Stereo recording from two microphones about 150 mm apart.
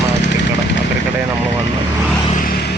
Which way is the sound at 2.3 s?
75° left (ahead or behind).